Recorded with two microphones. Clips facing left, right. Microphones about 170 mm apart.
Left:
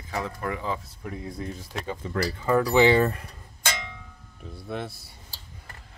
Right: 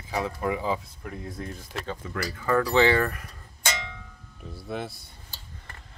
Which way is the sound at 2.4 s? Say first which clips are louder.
Left 2 dB; 15° left (ahead or behind).